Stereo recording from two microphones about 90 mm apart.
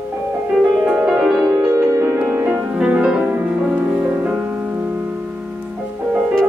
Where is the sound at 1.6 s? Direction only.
25° right (ahead or behind); by 5.7 s 10° right (ahead or behind).